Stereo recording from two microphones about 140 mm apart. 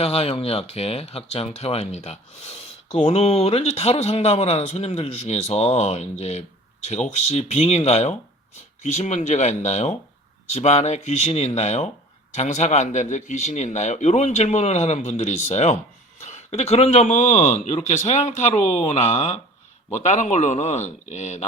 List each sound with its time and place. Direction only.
0.0 s speech: 45° left (ahead or behind)